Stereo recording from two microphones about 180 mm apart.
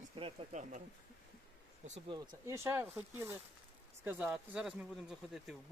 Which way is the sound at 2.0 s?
25° right (ahead or behind).